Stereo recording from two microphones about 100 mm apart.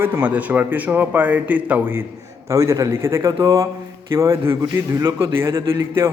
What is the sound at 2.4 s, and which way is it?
A man's voice, 30° right (ahead or behind).